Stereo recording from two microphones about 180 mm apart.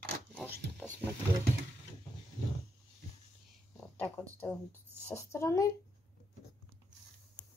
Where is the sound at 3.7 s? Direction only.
10° left (ahead or behind).